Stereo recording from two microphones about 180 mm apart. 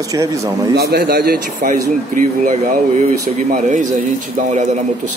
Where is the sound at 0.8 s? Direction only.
65° right (ahead or behind); by 5.1 s 45° right (ahead or behind).